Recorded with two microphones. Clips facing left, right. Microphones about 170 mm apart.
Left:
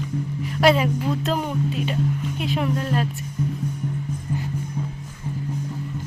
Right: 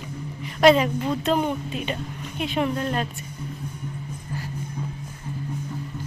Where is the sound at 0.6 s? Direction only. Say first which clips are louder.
Right 2 dB; 5° left (ahead or behind).